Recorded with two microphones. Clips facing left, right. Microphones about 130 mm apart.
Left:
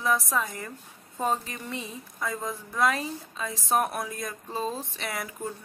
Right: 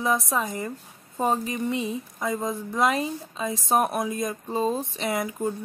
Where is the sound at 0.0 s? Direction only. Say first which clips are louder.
Right 2 dB; 20° right (ahead or behind).